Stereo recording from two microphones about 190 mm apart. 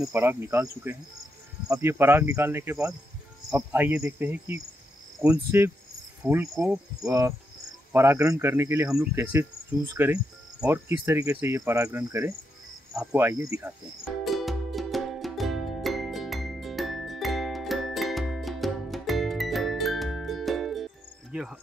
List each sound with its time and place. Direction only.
0.0 s cricket: 15° right (ahead or behind)
6.5 s speech: 5° right (ahead or behind)
7.1 s cricket: 15° right (ahead or behind)
14.2 s music: centre (ahead or behind)